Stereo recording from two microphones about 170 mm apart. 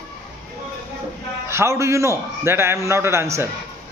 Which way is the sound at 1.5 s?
15° right (ahead or behind).